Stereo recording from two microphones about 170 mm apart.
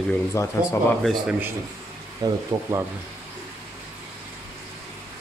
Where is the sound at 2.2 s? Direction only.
25° right (ahead or behind).